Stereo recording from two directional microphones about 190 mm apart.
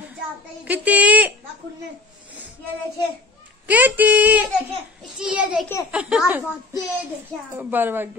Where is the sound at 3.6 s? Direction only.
10° right (ahead or behind).